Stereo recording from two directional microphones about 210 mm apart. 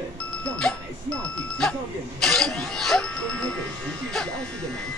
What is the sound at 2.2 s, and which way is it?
Speech, centre (ahead or behind).